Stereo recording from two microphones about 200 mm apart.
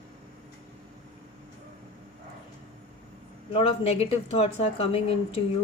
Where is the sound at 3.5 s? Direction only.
30° left (ahead or behind).